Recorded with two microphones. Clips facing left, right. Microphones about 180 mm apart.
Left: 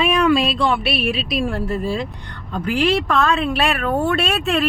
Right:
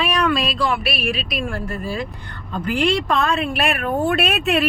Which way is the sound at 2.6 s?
10° left (ahead or behind).